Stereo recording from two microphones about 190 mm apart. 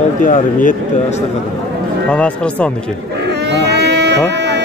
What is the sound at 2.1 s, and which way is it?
Speech, 5° left (ahead or behind).